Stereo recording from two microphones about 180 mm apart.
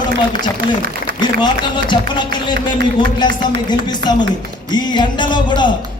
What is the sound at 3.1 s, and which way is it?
A man's voice, 25° left (ahead or behind).